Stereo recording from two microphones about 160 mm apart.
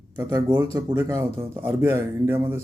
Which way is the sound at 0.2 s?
20° right (ahead or behind).